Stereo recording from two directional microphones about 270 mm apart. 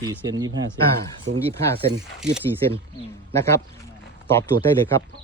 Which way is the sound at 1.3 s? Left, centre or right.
Right.